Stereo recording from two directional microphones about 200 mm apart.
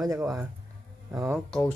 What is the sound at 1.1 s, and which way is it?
Speech, 10° right (ahead or behind).